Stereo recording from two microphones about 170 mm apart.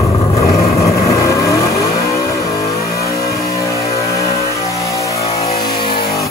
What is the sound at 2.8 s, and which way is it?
Vehicle, 65° left (ahead or behind).